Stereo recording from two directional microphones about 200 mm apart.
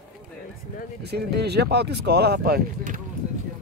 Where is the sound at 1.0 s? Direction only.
55° right (ahead or behind).